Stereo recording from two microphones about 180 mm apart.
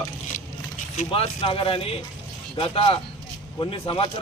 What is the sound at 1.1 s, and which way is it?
A man's voice, 30° left (ahead or behind).